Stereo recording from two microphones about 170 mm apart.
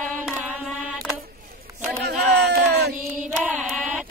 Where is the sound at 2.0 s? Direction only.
80° right.